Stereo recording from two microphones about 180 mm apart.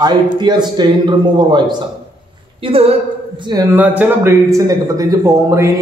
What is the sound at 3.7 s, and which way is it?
A man's voice, 10° right (ahead or behind).